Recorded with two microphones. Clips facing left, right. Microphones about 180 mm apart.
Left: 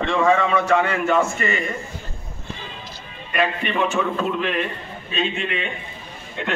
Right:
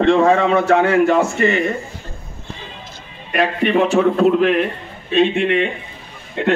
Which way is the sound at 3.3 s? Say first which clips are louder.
Right 6 dB; 55° right (ahead or behind).